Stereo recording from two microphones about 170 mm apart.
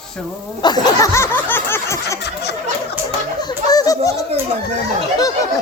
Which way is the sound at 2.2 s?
75° left (ahead or behind).